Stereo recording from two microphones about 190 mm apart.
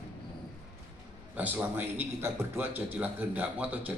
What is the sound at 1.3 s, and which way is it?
A man's voice, 10° right (ahead or behind).